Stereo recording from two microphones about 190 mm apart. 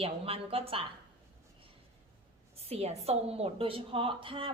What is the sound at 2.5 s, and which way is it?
A woman's voice, 30° right (ahead or behind).